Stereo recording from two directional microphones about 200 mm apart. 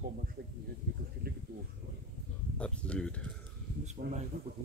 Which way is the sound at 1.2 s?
50° right (ahead or behind).